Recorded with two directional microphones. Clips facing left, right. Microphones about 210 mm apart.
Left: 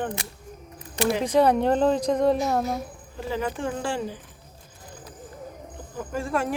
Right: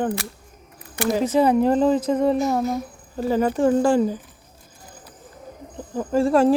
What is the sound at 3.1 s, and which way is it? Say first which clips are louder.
Speech: right 8 dB; 40° right (ahead or behind).